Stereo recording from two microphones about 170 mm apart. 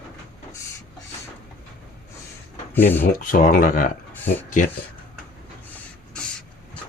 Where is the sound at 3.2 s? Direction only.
55° left (ahead or behind).